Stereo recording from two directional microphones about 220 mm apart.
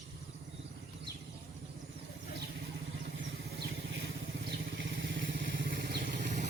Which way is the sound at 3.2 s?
55° right (ahead or behind).